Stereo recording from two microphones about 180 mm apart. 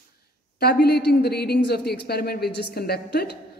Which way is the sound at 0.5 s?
60° left (ahead or behind).